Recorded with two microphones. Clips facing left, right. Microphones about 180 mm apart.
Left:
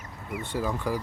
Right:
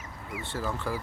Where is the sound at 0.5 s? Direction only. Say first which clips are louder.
Left 4 dB; 15° left (ahead or behind).